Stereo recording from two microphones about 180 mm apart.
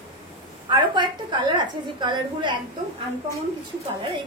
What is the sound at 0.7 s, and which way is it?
A woman's voice, 25° right (ahead or behind).